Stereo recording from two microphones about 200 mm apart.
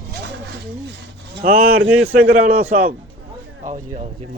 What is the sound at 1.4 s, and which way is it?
Speech, 50° right (ahead or behind).